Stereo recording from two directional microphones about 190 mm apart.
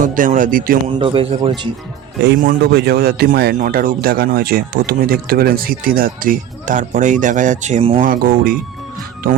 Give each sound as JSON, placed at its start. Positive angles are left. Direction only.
{"t": 0.0, "sound": "speech", "side_deg": -45}
{"t": 0.9, "sound": "speech", "side_deg": -30}
{"t": 2.2, "sound": "speech", "side_deg": -50}
{"t": 8.0, "sound": "speech", "side_deg": -45}